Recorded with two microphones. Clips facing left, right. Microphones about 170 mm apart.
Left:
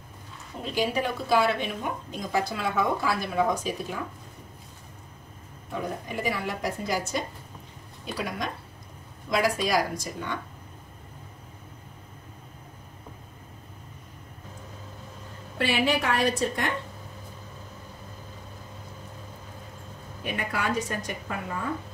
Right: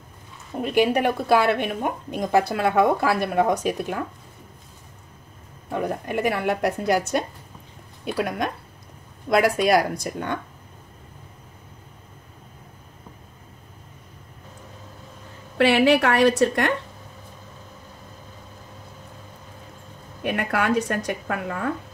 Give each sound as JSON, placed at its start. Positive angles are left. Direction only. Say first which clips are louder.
{"t": 0.6, "sound": "a woman's voice", "louder": "right 7 dB", "side_deg": -65}
{"t": 5.7, "sound": "a woman's voice", "louder": "right 6 dB", "side_deg": -65}
{"t": 15.5, "sound": "a woman's voice", "louder": "right 8 dB", "side_deg": -70}
{"t": 20.2, "sound": "a woman's voice", "louder": "right 6 dB", "side_deg": -65}